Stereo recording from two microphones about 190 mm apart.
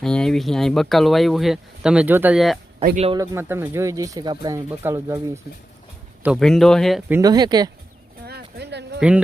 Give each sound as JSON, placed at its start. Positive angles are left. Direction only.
{"t": 0.0, "sound": "speech", "side_deg": 5}
{"t": 3.2, "sound": "speech", "side_deg": -10}
{"t": 6.2, "sound": "speech", "side_deg": 0}
{"t": 7.1, "sound": "speech", "side_deg": -20}
{"t": 8.2, "sound": "a sound", "side_deg": -60}
{"t": 9.0, "sound": "a woman's voice", "side_deg": -5}